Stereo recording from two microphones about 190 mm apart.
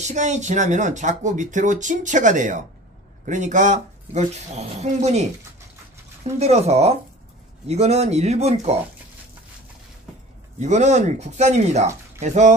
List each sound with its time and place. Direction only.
0.0 s speech: 40° right (ahead or behind)
6.4 s speech: 35° right (ahead or behind)
10.6 s speech: 40° right (ahead or behind)